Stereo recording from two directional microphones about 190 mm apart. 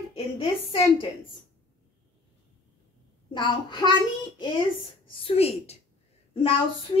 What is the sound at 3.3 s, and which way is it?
A child's voice, 25° left (ahead or behind).